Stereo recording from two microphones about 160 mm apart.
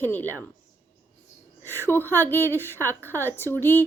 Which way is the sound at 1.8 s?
15° left (ahead or behind).